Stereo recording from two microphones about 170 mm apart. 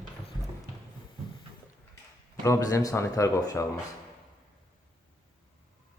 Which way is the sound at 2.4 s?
20° left (ahead or behind).